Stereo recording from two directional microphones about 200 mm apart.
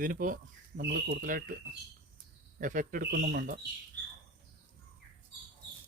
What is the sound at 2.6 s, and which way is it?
Speech, 40° right (ahead or behind).